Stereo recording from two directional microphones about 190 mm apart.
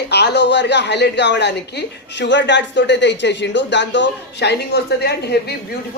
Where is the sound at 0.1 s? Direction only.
65° left (ahead or behind).